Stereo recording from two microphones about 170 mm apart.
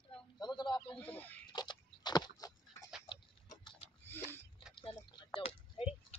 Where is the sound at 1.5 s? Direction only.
25° left (ahead or behind).